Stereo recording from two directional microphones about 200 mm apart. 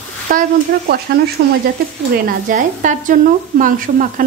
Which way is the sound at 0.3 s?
45° right (ahead or behind).